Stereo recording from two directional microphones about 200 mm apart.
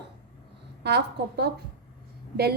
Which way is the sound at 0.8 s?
55° right (ahead or behind).